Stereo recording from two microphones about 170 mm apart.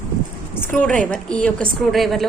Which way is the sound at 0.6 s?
10° left (ahead or behind).